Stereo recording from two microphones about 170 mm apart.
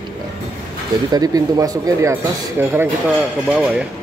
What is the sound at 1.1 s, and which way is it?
Speech, 20° right (ahead or behind).